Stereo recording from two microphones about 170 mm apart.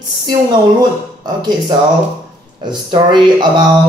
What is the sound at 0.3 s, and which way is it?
Speech, 25° right (ahead or behind).